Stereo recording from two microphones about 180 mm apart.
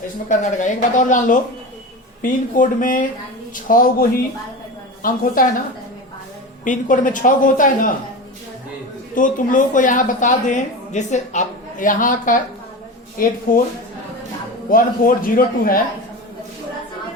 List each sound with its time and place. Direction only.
0.3 s speech: 45° left (ahead or behind)
6.7 s speech: 45° left (ahead or behind)
9.1 s speech: 45° left (ahead or behind)
14.7 s speech: 50° left (ahead or behind)